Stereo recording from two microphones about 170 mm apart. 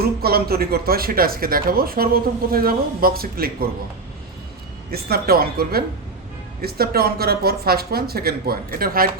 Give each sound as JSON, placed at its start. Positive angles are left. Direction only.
{"t": 0.2, "sound": "speech", "side_deg": -65}
{"t": 4.9, "sound": "speech", "side_deg": -65}